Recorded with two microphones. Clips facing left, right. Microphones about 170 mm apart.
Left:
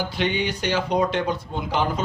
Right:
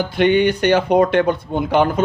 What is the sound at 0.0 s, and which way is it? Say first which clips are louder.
A man's voice: right 10 dB; 55° right (ahead or behind).